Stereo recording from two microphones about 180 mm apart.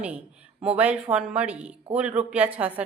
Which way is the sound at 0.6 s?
5° right (ahead or behind).